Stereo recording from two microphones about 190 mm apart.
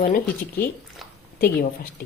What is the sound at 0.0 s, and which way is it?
A woman's voice, 50° left (ahead or behind).